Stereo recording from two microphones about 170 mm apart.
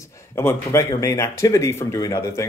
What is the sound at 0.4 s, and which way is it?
Speech, 15° left (ahead or behind).